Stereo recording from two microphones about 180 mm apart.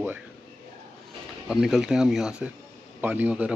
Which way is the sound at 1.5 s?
5° right (ahead or behind).